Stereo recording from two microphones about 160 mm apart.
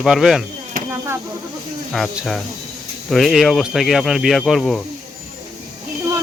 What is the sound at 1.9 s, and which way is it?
Speech, centre (ahead or behind).